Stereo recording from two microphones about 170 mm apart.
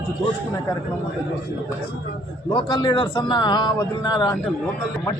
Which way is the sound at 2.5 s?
25° left (ahead or behind).